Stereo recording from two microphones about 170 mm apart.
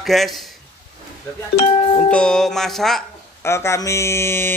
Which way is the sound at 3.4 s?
15° left (ahead or behind).